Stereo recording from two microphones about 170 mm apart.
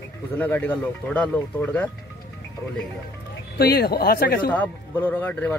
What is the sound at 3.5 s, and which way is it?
Speech, 65° left (ahead or behind).